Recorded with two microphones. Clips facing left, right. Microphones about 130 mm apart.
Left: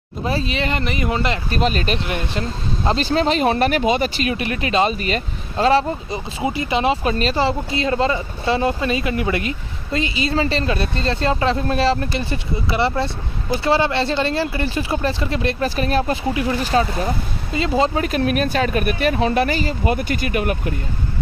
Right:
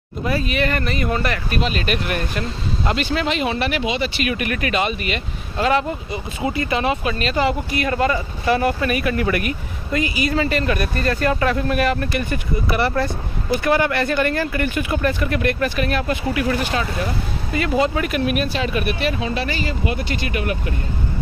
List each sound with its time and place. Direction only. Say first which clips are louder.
0.2 s speech: right 1 dB; 25° left (ahead or behind)
1.6 s speech: left 3 dB; 40° left (ahead or behind)
2.0 s speech: even; 25° left (ahead or behind); by 4.3 s 45° left (ahead or behind)
4.3 s speech: left 1 dB; 25° left (ahead or behind)
7.0 s speech: left 1 dB; 35° left (ahead or behind)